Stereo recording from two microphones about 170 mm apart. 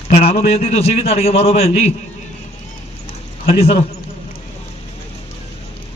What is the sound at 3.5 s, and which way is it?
Speech, 35° left (ahead or behind).